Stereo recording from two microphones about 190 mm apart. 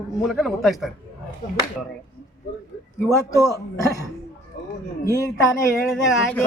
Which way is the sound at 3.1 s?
15° left (ahead or behind).